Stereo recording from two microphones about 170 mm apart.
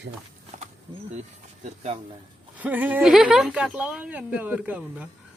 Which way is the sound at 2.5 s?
10° right (ahead or behind).